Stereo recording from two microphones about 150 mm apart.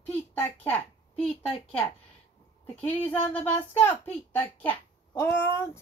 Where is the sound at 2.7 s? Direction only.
10° left (ahead or behind).